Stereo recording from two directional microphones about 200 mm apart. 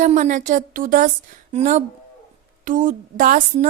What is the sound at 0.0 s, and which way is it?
Speech, 40° right (ahead or behind).